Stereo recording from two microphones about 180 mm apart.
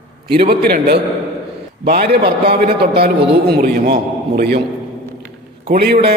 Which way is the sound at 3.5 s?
55° right (ahead or behind).